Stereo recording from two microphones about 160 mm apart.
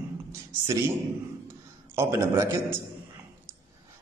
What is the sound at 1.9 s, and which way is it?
Speech, 15° right (ahead or behind).